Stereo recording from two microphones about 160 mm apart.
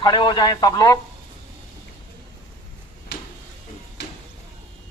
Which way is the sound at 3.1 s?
90° left.